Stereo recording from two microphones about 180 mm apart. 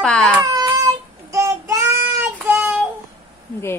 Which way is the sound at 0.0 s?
5° left (ahead or behind).